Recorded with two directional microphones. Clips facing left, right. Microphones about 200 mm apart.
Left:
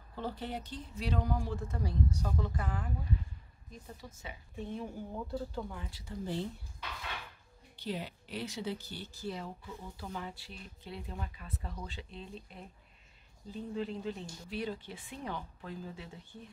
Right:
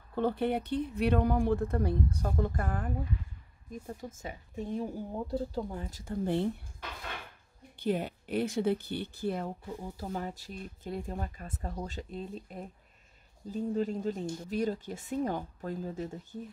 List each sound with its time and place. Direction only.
0.1 s speech: 60° right (ahead or behind); by 16.4 s 45° right (ahead or behind)